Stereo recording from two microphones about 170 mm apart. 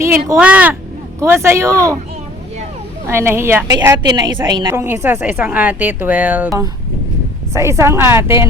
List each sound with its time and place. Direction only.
0.0 s speech: 15° right (ahead or behind)
3.1 s speech: 15° right (ahead or behind)
3.8 s a woman's voice: 25° right (ahead or behind)
4.7 s speech: 10° right (ahead or behind)
7.5 s speech: 15° right (ahead or behind)